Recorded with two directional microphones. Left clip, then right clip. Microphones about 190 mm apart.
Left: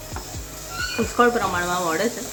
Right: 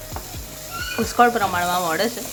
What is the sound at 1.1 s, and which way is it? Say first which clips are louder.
Speech: right 2 dB; 15° right (ahead or behind).